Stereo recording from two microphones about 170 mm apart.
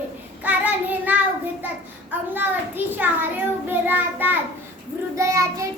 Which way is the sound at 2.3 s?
10° right (ahead or behind).